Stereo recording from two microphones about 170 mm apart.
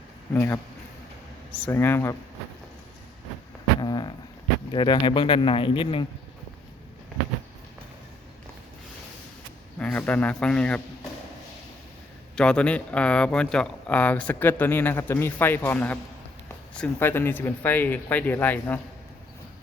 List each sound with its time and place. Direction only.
0.3 s speech: 15° left (ahead or behind)
1.6 s speech: 15° left (ahead or behind)
3.8 s a sound: 25° left (ahead or behind)
4.7 s speech: 30° left (ahead or behind)
9.7 s speech: 10° left (ahead or behind)
12.4 s speech: 5° left (ahead or behind)